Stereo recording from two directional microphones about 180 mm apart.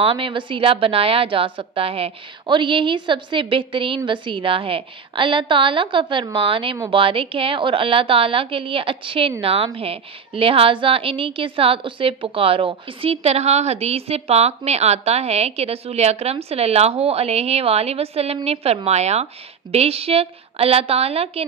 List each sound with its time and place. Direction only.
0.0 s a woman's voice: 30° right (ahead or behind)